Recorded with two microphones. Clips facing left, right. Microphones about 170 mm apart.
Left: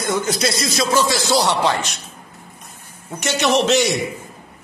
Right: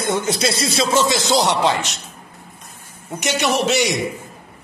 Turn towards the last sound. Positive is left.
turn(degrees=-10)  # may be behind; listen again after turning